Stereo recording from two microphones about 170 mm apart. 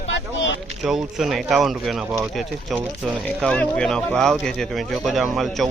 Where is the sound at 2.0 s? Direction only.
15° right (ahead or behind).